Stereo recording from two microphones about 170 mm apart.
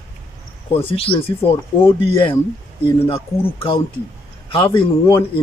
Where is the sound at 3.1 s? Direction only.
35° left (ahead or behind).